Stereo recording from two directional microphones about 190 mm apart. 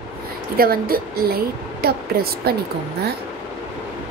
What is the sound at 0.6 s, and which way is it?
Speech, 50° right (ahead or behind).